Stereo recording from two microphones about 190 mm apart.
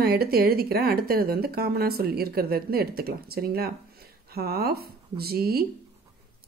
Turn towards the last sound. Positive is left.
turn(degrees=-55)  # may be behind; listen again after turning